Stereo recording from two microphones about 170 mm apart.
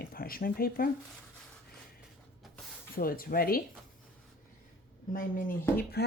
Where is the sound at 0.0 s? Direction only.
60° left (ahead or behind).